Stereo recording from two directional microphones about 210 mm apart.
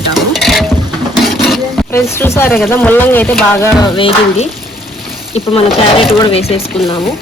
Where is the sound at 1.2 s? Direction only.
Centre (ahead or behind).